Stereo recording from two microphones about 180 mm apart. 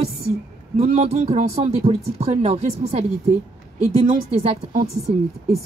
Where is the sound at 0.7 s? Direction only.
35° right (ahead or behind).